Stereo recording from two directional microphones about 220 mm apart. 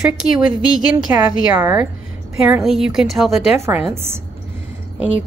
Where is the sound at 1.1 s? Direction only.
10° right (ahead or behind).